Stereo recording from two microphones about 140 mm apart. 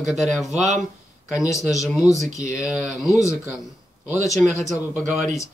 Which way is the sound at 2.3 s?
20° left (ahead or behind).